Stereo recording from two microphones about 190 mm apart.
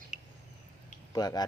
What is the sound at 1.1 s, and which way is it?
Speech, 20° left (ahead or behind).